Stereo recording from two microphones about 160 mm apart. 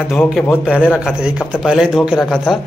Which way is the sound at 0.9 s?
5° right (ahead or behind).